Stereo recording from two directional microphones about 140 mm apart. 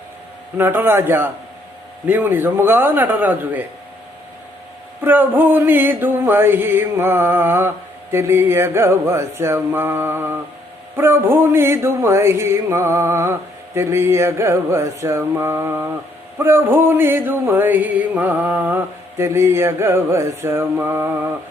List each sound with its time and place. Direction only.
0.5 s male singing: 15° right (ahead or behind)
5.0 s male singing: 15° right (ahead or behind)